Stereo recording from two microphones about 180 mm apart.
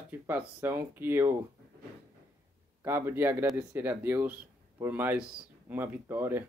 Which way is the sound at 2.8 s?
15° right (ahead or behind).